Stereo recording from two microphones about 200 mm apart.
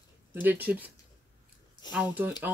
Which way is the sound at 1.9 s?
10° right (ahead or behind).